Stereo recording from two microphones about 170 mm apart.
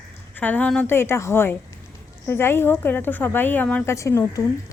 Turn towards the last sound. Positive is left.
turn(degrees=15)  # may be behind; listen again after turning